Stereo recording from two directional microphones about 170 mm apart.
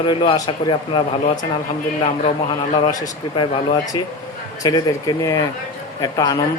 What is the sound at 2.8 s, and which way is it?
Speech, 25° left (ahead or behind).